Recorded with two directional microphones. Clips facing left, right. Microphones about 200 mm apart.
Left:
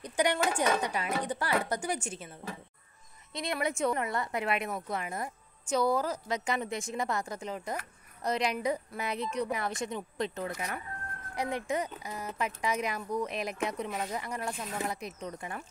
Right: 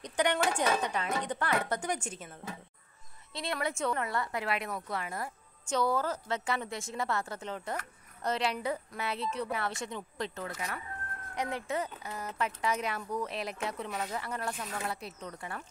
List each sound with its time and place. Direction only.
0.0 s a woman's voice: 10° left (ahead or behind)
3.3 s a woman's voice: 20° left (ahead or behind)